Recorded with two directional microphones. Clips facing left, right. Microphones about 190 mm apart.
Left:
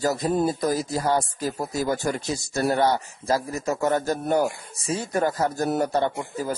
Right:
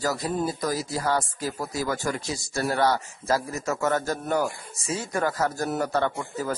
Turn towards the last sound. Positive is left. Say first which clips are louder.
# left 1 dB
turn(degrees=15)  # may be behind; listen again after turning